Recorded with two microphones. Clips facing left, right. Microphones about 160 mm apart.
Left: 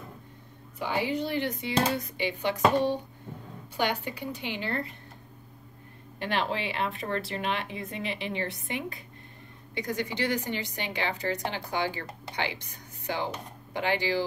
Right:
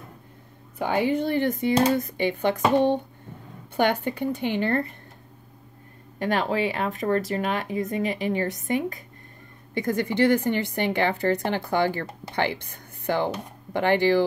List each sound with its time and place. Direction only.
0.7 s a woman's voice: 55° right (ahead or behind)
6.1 s a woman's voice: 45° right (ahead or behind)